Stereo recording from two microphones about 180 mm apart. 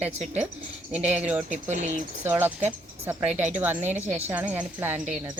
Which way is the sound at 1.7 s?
40° right (ahead or behind).